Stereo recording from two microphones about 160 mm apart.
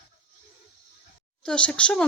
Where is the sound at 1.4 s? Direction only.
5° left (ahead or behind).